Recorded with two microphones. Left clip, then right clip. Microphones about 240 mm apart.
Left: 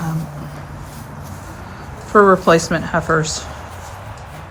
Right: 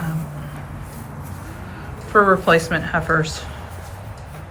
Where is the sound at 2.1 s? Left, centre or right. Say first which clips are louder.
Left 3 dB; left.